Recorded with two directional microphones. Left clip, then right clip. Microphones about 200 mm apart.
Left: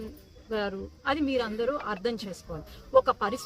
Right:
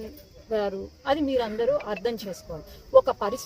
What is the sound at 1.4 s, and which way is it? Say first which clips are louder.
Speech: right 4 dB; 30° left (ahead or behind).